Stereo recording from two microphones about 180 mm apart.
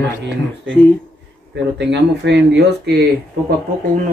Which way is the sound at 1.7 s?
75° right (ahead or behind).